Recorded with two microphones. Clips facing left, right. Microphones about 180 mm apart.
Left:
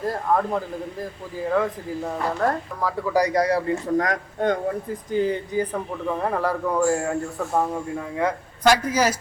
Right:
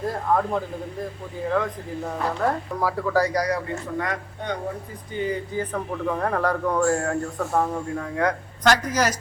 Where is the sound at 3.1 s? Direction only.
15° left (ahead or behind).